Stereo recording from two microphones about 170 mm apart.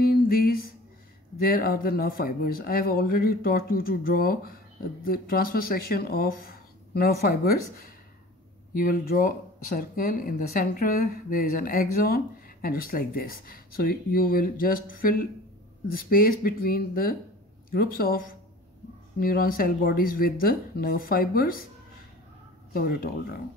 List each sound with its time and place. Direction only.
0.0 s a sound: 60° left (ahead or behind)
1.4 s speech: 60° left (ahead or behind)
19.2 s speech: 60° left (ahead or behind)
22.7 s speech: 60° left (ahead or behind)